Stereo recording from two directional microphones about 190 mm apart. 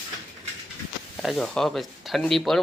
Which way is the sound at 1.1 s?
Centre (ahead or behind).